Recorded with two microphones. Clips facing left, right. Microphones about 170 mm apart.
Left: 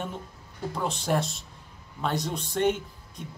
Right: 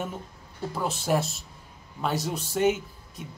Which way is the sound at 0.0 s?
5° right (ahead or behind).